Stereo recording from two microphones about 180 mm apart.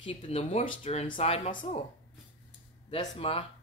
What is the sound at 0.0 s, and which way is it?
Speech, 30° left (ahead or behind).